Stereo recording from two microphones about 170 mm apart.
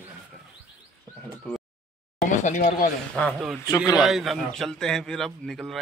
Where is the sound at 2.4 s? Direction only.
45° left (ahead or behind).